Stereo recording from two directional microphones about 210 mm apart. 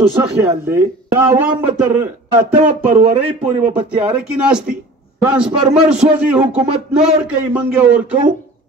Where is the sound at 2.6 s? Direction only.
35° right (ahead or behind).